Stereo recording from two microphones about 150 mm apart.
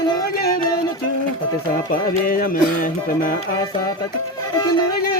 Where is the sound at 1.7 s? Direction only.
75° left (ahead or behind).